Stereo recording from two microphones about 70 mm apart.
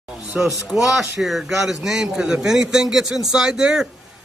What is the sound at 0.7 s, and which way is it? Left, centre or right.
A man's voice, centre.